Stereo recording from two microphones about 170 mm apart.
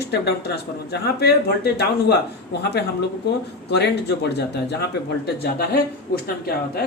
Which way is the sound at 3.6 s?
75° left (ahead or behind).